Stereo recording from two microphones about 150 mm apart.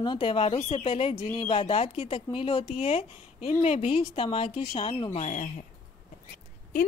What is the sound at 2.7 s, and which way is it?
A woman's voice, 45° left (ahead or behind).